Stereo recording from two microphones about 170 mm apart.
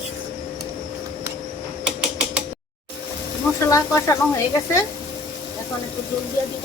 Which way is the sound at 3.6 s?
20° left (ahead or behind).